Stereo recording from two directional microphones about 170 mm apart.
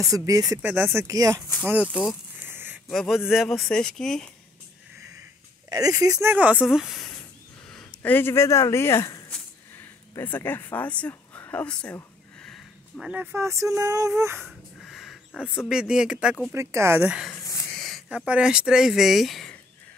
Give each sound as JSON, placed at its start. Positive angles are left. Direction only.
{"t": 0.0, "sound": "speech", "side_deg": -20}
{"t": 1.9, "sound": "speech", "side_deg": 5}
{"t": 2.4, "sound": "a sound", "side_deg": -10}
{"t": 2.9, "sound": "speech", "side_deg": 0}
{"t": 5.7, "sound": "speech", "side_deg": -20}
{"t": 6.3, "sound": "speech", "side_deg": -10}
{"t": 14.4, "sound": "a sound", "side_deg": 0}
{"t": 15.7, "sound": "speech", "side_deg": -5}
{"t": 16.5, "sound": "speech", "side_deg": -15}
{"t": 17.0, "sound": "speech", "side_deg": -5}